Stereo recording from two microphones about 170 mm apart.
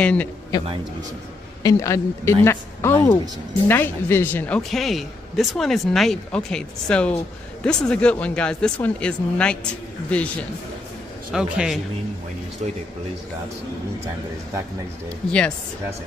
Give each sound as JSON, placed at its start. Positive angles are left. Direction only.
{"t": 0.0, "sound": "speech", "side_deg": 10}
{"t": 0.5, "sound": "a man's voice", "side_deg": 20}
{"t": 11.3, "sound": "speech", "side_deg": -5}